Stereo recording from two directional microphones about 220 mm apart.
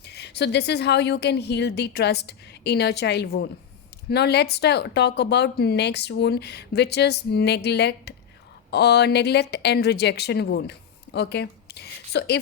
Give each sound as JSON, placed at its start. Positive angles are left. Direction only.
{"t": 0.1, "sound": "speech", "side_deg": 50}